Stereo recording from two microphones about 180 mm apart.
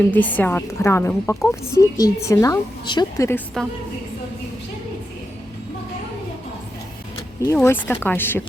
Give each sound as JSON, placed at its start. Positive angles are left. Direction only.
{"t": 0.1, "sound": "a woman's voice", "side_deg": 10}
{"t": 7.4, "sound": "a woman's voice", "side_deg": 15}